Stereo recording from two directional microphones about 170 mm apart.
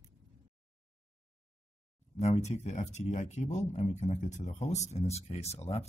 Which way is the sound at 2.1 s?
40° left (ahead or behind).